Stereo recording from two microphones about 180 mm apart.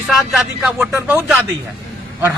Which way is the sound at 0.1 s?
Centre (ahead or behind).